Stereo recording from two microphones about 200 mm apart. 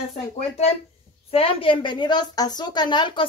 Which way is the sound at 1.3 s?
30° left (ahead or behind).